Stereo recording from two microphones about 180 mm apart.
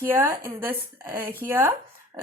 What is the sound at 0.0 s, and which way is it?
A woman's voice, 10° right (ahead or behind).